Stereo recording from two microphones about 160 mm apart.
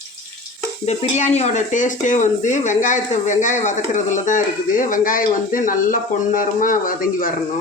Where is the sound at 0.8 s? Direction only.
45° left (ahead or behind).